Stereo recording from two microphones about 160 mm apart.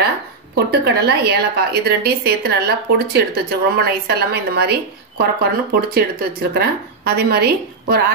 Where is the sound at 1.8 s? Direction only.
80° right.